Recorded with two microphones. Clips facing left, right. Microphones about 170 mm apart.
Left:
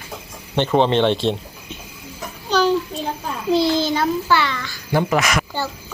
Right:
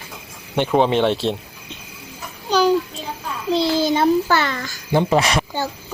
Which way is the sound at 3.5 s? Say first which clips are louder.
Left 2 dB; centre (ahead or behind).